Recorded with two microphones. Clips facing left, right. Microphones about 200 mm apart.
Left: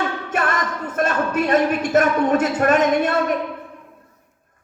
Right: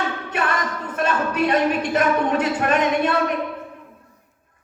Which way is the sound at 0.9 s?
45° left (ahead or behind).